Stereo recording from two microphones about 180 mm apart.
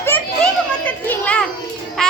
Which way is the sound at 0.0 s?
10° left (ahead or behind).